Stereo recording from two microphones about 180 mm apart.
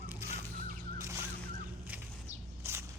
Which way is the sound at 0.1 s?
15° right (ahead or behind).